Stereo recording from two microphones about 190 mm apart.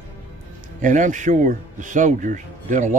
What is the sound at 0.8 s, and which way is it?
Speech, 40° right (ahead or behind).